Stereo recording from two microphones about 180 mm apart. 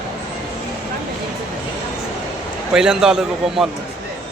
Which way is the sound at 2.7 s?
5° right (ahead or behind).